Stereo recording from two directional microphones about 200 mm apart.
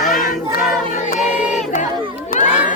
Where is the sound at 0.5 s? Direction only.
40° left (ahead or behind).